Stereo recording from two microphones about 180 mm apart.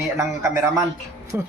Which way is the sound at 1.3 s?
15° right (ahead or behind).